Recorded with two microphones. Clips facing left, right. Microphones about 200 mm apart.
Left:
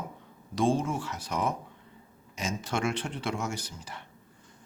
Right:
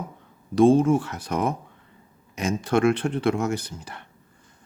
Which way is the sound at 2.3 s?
55° right (ahead or behind).